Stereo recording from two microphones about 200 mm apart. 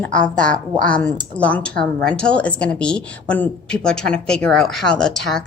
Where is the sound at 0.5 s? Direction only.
45° right (ahead or behind).